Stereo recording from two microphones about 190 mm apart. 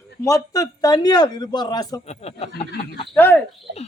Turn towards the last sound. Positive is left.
turn(degrees=-70)  # may be behind; listen again after turning